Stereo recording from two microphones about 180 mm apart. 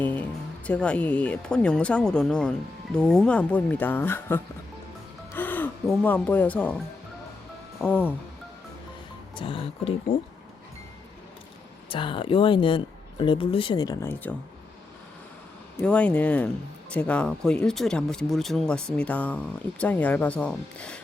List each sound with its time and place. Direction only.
0.0 s music: 10° left (ahead or behind)
0.7 s speech: 5° left (ahead or behind)
5.3 s music: 10° left (ahead or behind)
5.9 s speech: 5° left (ahead or behind)
7.8 s speech: 10° left (ahead or behind)
9.3 s speech: 30° left (ahead or behind)
11.9 s speech: 30° left (ahead or behind)
15.8 s speech: 5° left (ahead or behind)